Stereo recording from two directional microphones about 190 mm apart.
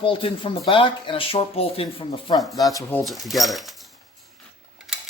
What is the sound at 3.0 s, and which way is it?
Speech, centre (ahead or behind).